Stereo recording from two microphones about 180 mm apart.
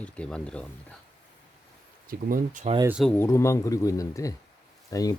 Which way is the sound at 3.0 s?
5° left (ahead or behind).